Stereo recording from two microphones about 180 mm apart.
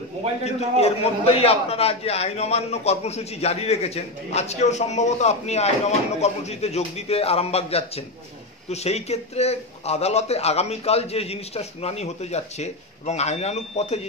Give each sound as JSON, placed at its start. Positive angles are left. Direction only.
{"t": 0.5, "sound": "a man's voice", "side_deg": 35}